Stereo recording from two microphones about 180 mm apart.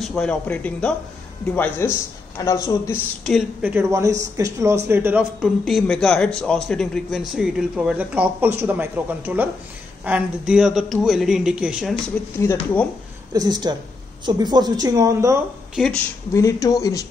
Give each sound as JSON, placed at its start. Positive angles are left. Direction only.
{"t": 0.0, "sound": "a man's voice", "side_deg": 5}
{"t": 3.6, "sound": "speech", "side_deg": -15}
{"t": 5.4, "sound": "a man's voice", "side_deg": 0}
{"t": 12.4, "sound": "speech", "side_deg": 15}
{"t": 13.3, "sound": "a woman's voice", "side_deg": -20}
{"t": 15.7, "sound": "speech", "side_deg": 0}
{"t": 16.3, "sound": "speech", "side_deg": 20}